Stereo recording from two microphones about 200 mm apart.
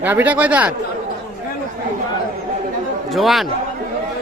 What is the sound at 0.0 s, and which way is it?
Speech, 10° right (ahead or behind).